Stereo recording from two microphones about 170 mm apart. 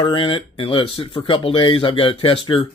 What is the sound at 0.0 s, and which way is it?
Speech, 30° left (ahead or behind).